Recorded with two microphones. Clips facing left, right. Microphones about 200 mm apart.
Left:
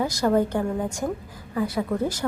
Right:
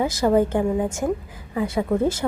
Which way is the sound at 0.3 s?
15° right (ahead or behind).